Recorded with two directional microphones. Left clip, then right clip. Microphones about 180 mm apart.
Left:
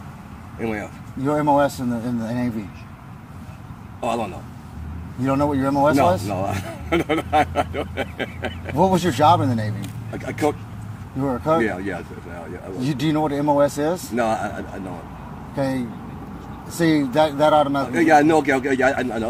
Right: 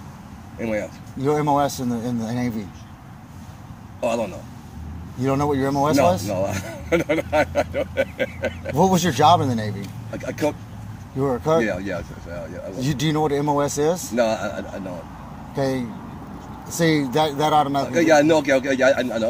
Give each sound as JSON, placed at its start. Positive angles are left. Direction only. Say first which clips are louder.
{"t": 0.6, "sound": "speech", "louder": "right 2 dB", "side_deg": -30}
{"t": 1.2, "sound": "speech", "louder": "left 1 dB", "side_deg": -45}
{"t": 5.2, "sound": "speech", "louder": "left 1 dB", "side_deg": -40}
{"t": 8.7, "sound": "speech", "louder": "left 1 dB", "side_deg": -45}
{"t": 12.8, "sound": "speech", "louder": "even", "side_deg": -45}